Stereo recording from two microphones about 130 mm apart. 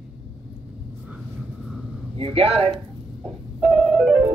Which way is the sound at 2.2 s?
45° right (ahead or behind).